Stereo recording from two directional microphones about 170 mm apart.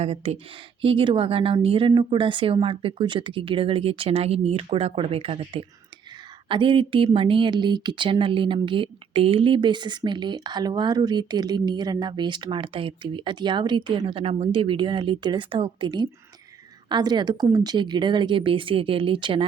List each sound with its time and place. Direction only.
0.0 s a woman's voice: 35° right (ahead or behind)